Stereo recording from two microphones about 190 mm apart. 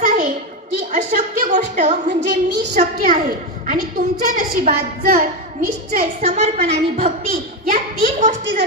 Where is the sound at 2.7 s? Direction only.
45° right (ahead or behind).